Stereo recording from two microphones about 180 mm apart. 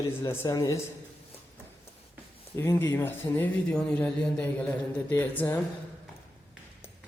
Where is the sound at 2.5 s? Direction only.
15° left (ahead or behind).